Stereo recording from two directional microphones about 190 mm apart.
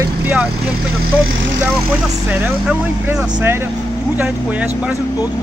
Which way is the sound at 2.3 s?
10° right (ahead or behind).